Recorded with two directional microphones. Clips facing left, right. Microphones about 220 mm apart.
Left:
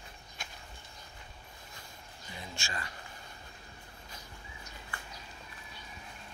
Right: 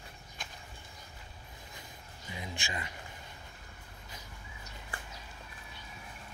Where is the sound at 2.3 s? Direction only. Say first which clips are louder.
Right 2 dB; 15° right (ahead or behind).